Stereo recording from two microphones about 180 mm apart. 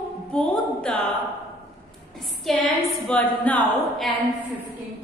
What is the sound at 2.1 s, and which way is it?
A woman's voice, centre (ahead or behind).